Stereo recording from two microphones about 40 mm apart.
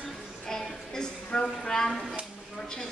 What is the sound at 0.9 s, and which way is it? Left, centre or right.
A woman's voice, centre.